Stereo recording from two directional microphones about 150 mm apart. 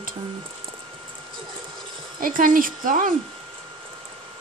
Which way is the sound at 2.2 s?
70° right (ahead or behind).